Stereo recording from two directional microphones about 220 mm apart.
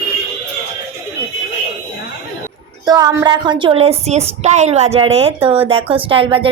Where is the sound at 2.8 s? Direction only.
15° right (ahead or behind).